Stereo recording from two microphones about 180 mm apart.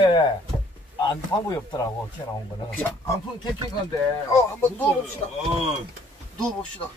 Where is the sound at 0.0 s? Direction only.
25° left (ahead or behind).